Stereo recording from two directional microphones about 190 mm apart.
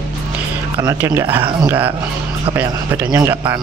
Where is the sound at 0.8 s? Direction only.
15° right (ahead or behind).